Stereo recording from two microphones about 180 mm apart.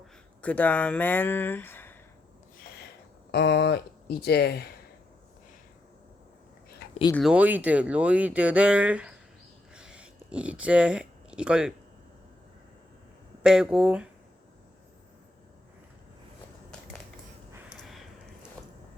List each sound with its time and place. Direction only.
0.4 s speech: 10° left (ahead or behind)
3.3 s speech: 70° left (ahead or behind)
7.2 s speech: 5° right (ahead or behind)
9.7 s a sound: 5° right (ahead or behind)
13.4 s speech: 5° right (ahead or behind)